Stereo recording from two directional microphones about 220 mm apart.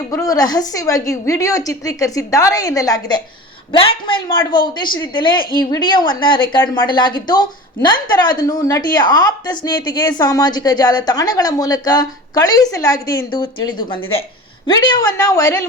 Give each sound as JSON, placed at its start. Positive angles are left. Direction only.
{"t": 0.1, "sound": "a woman's voice", "side_deg": 15}